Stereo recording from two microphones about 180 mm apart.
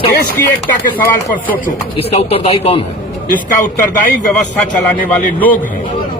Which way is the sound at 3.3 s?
45° left (ahead or behind).